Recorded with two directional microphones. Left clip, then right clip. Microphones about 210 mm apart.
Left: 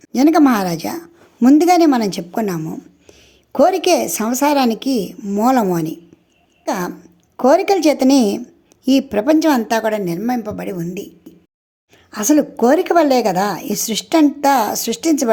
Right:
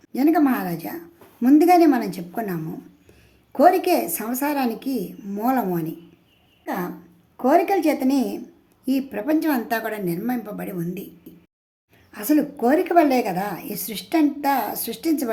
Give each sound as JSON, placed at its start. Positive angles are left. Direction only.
{"t": 0.0, "sound": "a woman's voice", "side_deg": 40}
{"t": 6.7, "sound": "throat clearing", "side_deg": 50}
{"t": 7.3, "sound": "a woman's voice", "side_deg": 45}
{"t": 12.1, "sound": "a woman's voice", "side_deg": 40}